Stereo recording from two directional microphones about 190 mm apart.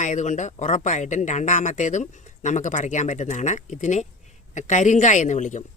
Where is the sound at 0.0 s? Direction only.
40° left (ahead or behind).